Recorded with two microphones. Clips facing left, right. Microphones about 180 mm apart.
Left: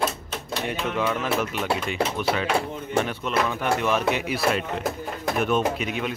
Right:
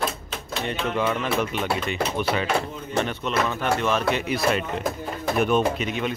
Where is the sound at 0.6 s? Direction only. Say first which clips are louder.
Right 1 dB; centre (ahead or behind).